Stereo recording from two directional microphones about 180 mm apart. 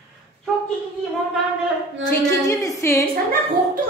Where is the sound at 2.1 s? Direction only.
15° left (ahead or behind).